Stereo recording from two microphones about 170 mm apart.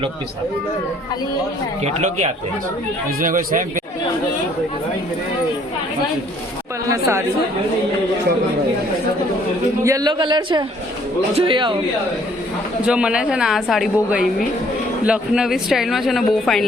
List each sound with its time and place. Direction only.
1.8 s speech: 45° right (ahead or behind)
3.2 s speech: 55° right (ahead or behind)
6.9 s speech: 15° right (ahead or behind)
9.8 s a man's voice: 20° right (ahead or behind)
12.8 s speech: 5° right (ahead or behind)